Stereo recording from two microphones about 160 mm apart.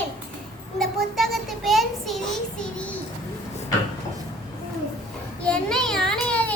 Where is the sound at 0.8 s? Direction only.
Centre (ahead or behind).